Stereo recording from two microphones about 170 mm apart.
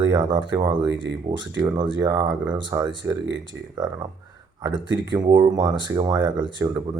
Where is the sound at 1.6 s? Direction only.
25° right (ahead or behind).